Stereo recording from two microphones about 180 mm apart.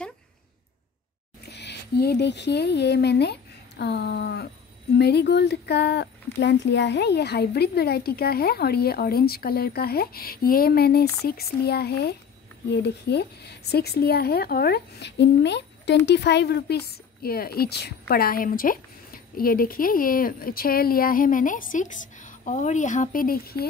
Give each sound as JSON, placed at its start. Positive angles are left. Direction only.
{"t": 1.5, "sound": "speech", "side_deg": 70}